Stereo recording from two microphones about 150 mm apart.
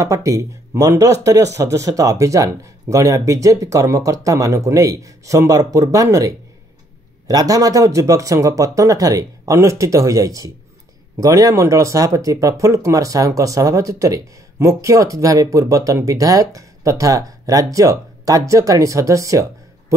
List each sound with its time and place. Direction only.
0.0 s speech: 20° right (ahead or behind)